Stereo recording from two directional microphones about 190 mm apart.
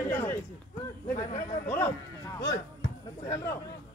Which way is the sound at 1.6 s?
10° left (ahead or behind).